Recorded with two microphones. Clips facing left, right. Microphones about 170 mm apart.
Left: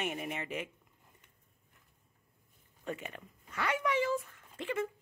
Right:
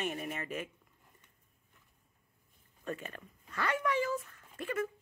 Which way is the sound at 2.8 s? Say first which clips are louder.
Even; 15° left (ahead or behind).